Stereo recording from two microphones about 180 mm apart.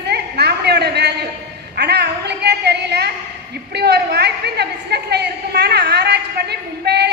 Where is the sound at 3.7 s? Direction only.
65° right (ahead or behind).